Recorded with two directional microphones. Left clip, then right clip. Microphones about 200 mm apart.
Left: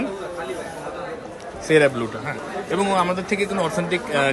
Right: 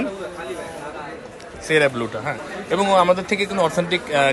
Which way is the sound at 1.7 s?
15° left (ahead or behind).